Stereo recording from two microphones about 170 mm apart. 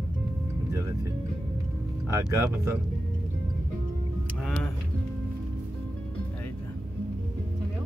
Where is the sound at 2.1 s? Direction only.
15° right (ahead or behind).